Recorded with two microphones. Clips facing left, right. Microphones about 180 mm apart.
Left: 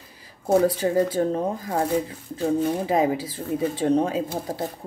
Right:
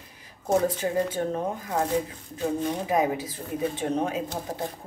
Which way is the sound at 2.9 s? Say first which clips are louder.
Left 3 dB; 30° left (ahead or behind).